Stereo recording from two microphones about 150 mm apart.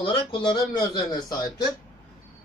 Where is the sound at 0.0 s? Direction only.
35° left (ahead or behind).